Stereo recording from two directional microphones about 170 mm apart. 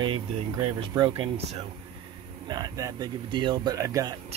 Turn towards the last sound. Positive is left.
turn(degrees=-20)  # may be behind; listen again after turning